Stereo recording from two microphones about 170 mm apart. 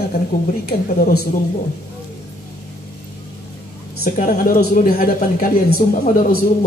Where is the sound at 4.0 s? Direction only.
55° left (ahead or behind).